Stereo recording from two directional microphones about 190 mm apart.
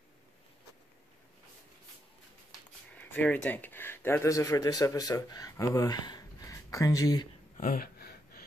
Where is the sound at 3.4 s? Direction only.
10° left (ahead or behind).